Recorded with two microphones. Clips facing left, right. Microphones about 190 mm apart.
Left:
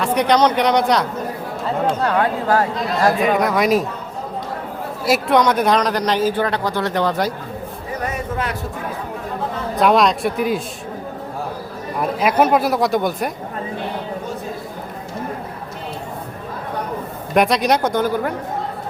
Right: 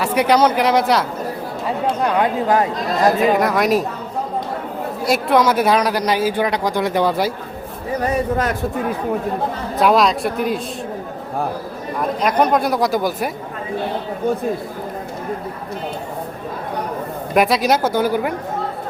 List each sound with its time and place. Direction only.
0.0 s speech: 5° right (ahead or behind)
1.6 s speech: 15° right (ahead or behind)
3.3 s speech: centre (ahead or behind)
5.0 s speech: centre (ahead or behind)
8.0 s a sound: 35° right (ahead or behind)
9.8 s speech: centre (ahead or behind)
11.9 s speech: 5° left (ahead or behind)
17.3 s speech: 5° right (ahead or behind)